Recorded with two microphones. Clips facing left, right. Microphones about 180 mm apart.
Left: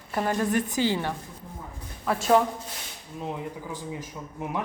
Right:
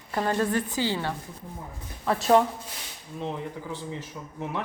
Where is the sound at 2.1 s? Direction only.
Centre (ahead or behind).